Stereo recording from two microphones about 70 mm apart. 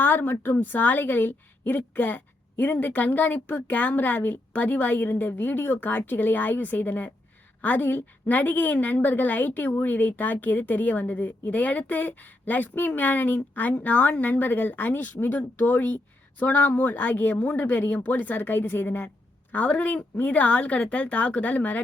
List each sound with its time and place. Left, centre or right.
0.0 s a woman's voice: left